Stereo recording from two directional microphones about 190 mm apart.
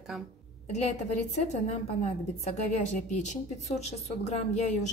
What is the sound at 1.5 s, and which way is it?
Speech, 35° left (ahead or behind).